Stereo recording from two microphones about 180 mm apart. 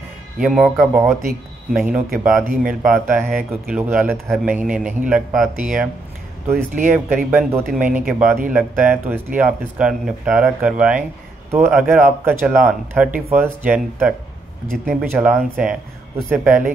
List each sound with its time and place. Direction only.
0.4 s speech: 5° right (ahead or behind)
2.4 s speech: 50° right (ahead or behind)
2.9 s speech: 10° right (ahead or behind)
6.5 s speech: 50° right (ahead or behind)
7.2 s speech: 10° right (ahead or behind)